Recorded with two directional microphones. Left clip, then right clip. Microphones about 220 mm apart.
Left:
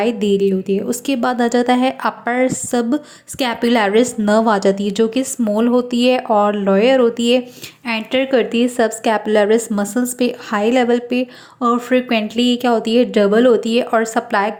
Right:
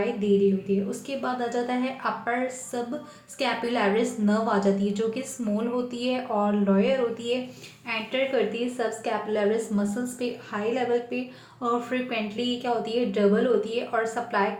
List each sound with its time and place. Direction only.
0.9 s a woman's voice: 45° left (ahead or behind)